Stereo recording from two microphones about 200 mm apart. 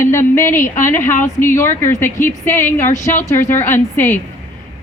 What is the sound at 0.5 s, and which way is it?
Speech, 40° left (ahead or behind).